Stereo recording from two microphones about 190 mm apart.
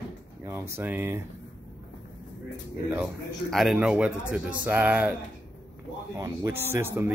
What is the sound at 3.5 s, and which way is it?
Speech, 5° right (ahead or behind).